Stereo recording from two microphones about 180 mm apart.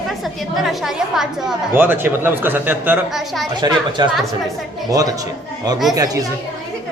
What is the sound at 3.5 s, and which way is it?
Speech, 25° right (ahead or behind).